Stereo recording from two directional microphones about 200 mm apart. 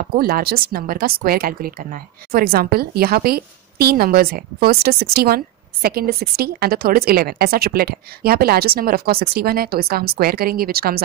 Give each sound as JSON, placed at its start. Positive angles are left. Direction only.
{"t": 0.2, "sound": "a woman's voice", "side_deg": -50}